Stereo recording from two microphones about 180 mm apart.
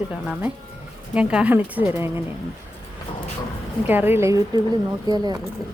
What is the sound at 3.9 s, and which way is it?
Speech, 10° right (ahead or behind).